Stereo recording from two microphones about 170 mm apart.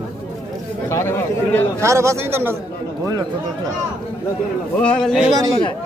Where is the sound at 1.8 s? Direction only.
15° right (ahead or behind).